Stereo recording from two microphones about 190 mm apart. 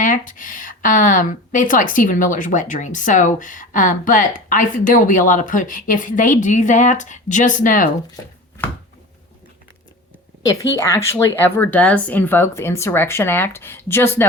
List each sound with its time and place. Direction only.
0.0 s speech: 45° left (ahead or behind)
8.1 s chopping: 10° left (ahead or behind)
10.4 s a woman's voice: 15° left (ahead or behind)